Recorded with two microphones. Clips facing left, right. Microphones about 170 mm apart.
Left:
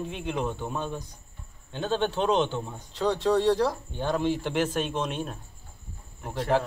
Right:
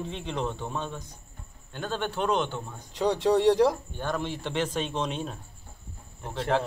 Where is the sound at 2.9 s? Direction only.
15° right (ahead or behind).